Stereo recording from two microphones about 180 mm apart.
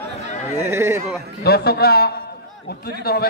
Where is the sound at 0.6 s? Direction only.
15° right (ahead or behind).